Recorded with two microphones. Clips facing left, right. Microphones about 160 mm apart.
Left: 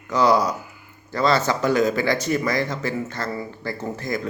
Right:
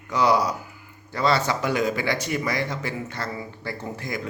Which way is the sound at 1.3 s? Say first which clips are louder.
Left 5 dB; 40° left (ahead or behind).